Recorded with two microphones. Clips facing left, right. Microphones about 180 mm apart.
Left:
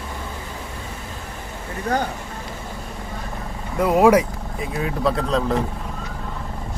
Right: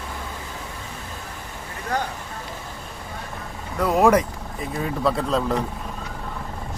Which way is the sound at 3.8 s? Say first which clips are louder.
Left 3 dB; 10° left (ahead or behind).